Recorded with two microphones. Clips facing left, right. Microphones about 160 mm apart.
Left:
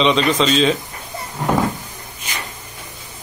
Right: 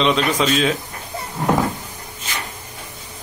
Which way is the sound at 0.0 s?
5° right (ahead or behind).